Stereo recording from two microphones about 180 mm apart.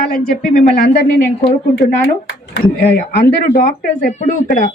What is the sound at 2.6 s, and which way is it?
Speech, 60° left (ahead or behind).